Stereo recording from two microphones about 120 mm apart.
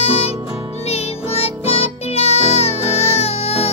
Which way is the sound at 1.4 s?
55° left (ahead or behind).